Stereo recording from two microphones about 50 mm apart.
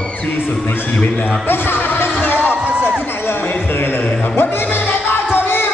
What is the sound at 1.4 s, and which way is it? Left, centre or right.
Music, left.